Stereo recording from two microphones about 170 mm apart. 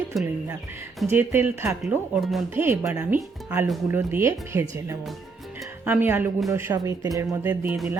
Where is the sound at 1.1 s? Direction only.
15° right (ahead or behind).